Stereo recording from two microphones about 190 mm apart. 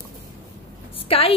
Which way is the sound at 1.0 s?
30° left (ahead or behind).